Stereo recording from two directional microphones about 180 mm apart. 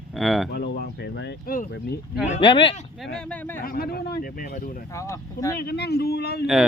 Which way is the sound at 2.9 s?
5° left (ahead or behind).